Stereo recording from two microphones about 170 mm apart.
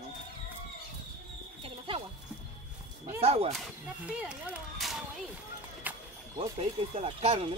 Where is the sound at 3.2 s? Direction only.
35° right (ahead or behind).